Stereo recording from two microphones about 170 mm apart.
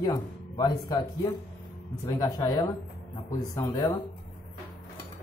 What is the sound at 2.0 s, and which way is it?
Speech, 20° left (ahead or behind).